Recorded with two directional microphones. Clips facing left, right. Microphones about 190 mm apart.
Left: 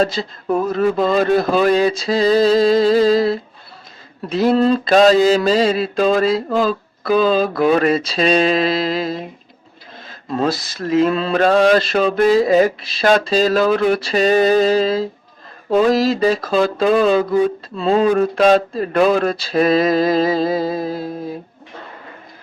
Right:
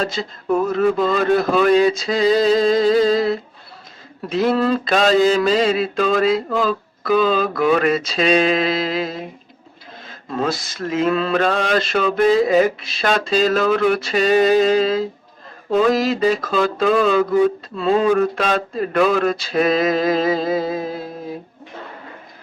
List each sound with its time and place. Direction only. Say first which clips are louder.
0.8 s mantra: left 1 dB; 35° left (ahead or behind)
4.4 s mantra: left 3 dB; 30° left (ahead or behind)
10.4 s mantra: left 2 dB; 35° left (ahead or behind)